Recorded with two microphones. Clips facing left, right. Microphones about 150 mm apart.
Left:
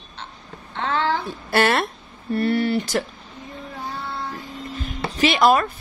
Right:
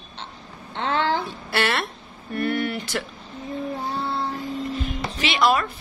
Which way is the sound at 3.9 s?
30° right (ahead or behind).